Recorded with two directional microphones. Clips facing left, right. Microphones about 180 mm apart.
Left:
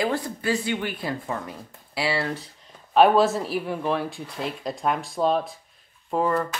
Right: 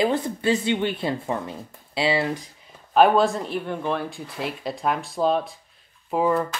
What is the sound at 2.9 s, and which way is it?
Speech, centre (ahead or behind).